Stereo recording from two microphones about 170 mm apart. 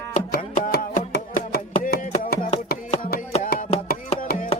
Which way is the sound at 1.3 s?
50° left (ahead or behind).